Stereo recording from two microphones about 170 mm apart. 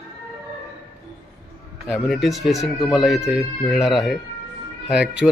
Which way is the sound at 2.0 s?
Centre (ahead or behind).